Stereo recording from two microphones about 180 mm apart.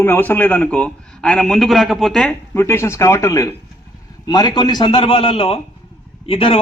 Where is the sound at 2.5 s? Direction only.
15° left (ahead or behind).